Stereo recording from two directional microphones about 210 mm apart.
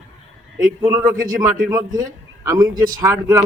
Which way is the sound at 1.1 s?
40° right (ahead or behind).